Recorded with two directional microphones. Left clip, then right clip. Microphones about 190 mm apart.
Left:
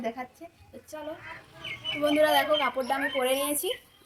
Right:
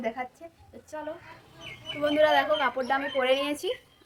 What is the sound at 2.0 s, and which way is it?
Speech, 10° right (ahead or behind).